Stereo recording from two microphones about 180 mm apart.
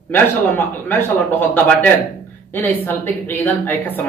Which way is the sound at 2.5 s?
10° left (ahead or behind).